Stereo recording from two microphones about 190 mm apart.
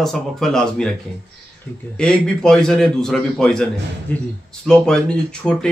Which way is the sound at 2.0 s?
5° left (ahead or behind).